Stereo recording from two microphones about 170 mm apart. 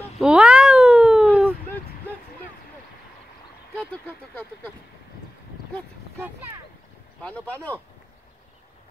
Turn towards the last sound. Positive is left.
turn(degrees=10)  # may be behind; listen again after turning